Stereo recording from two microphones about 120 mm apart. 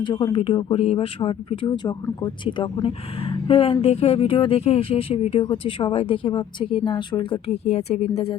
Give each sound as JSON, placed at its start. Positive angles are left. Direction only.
{"t": 0.0, "sound": "speech", "side_deg": 40}
{"t": 0.3, "sound": "speech", "side_deg": 50}